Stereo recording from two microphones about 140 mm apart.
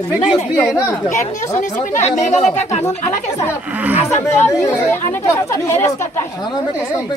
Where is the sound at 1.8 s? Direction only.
60° left (ahead or behind).